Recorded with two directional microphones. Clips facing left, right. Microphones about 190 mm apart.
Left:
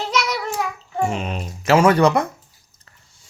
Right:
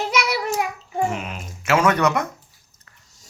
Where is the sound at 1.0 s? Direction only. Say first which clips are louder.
Left 3 dB; 30° left (ahead or behind).